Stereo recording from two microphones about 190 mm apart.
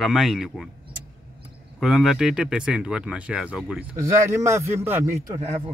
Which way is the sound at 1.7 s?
Centre (ahead or behind).